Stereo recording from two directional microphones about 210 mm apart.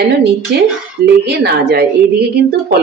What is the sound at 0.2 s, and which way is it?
Speech, 50° right (ahead or behind).